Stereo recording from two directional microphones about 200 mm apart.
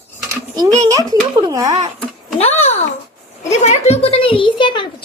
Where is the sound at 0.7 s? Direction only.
15° right (ahead or behind).